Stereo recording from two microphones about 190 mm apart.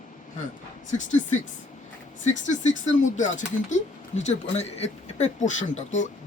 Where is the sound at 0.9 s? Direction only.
40° left (ahead or behind).